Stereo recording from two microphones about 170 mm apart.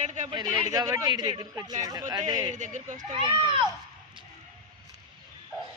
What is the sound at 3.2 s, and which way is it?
Speech, 30° right (ahead or behind).